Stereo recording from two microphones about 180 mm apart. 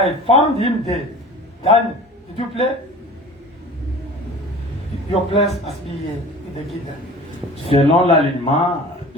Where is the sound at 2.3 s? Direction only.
30° left (ahead or behind).